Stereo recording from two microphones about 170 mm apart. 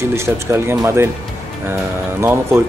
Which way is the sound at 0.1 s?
15° right (ahead or behind).